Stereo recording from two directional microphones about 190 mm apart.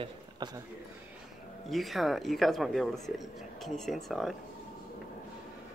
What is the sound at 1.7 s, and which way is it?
Speech, centre (ahead or behind).